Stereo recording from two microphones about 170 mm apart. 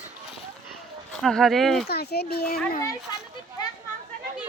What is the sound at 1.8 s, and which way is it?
Speech, 70° left (ahead or behind).